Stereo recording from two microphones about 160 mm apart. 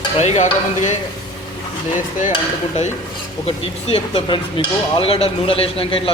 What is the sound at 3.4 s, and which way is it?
Speech, 35° left (ahead or behind).